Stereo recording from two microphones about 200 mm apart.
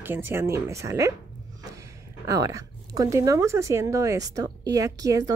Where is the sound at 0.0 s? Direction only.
10° right (ahead or behind).